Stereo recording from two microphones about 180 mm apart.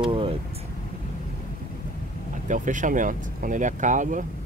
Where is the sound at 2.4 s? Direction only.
45° right (ahead or behind).